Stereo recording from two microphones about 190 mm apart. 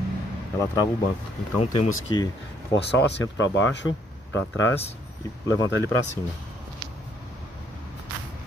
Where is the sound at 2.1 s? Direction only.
20° left (ahead or behind).